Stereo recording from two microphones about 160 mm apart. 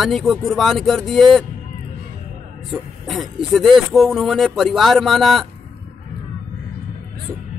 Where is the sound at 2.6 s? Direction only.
Centre (ahead or behind).